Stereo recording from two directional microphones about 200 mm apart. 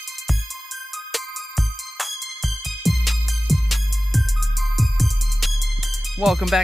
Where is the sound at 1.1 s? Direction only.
Centre (ahead or behind).